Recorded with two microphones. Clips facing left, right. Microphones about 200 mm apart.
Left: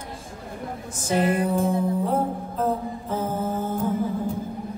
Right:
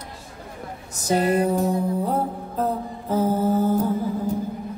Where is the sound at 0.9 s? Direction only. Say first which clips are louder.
Right 2 dB; 40° right (ahead or behind).